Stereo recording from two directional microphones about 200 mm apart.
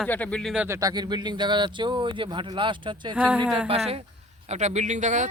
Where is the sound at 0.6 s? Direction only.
15° right (ahead or behind); by 5.3 s 40° right (ahead or behind).